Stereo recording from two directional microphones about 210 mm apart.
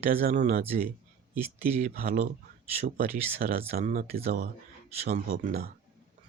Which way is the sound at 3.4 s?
45° right (ahead or behind).